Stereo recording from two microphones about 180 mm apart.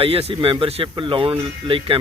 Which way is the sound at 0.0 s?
30° right (ahead or behind).